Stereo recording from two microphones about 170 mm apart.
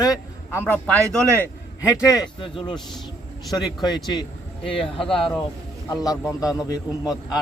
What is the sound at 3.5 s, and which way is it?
Speech, 25° left (ahead or behind).